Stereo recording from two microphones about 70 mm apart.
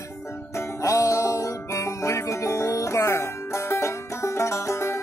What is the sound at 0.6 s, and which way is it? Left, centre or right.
Music, left.